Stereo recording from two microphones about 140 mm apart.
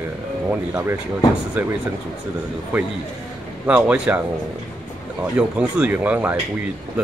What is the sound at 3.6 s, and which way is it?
Speech, 10° right (ahead or behind).